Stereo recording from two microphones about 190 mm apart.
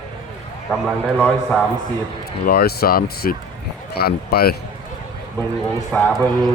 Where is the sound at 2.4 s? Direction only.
55° left (ahead or behind).